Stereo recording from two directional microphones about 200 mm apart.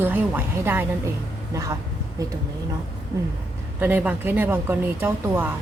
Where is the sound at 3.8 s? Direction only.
5° right (ahead or behind).